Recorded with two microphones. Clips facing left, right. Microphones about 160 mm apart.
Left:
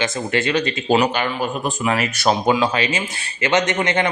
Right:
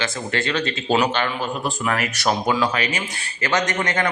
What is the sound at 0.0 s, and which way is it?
A man's voice, 20° left (ahead or behind).